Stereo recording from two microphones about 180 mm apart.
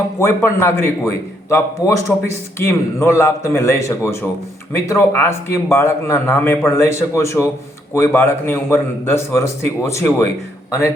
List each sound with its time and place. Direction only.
0.2 s a man's voice: 15° left (ahead or behind)